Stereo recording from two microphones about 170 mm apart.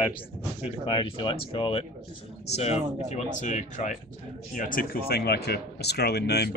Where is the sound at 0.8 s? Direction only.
30° left (ahead or behind).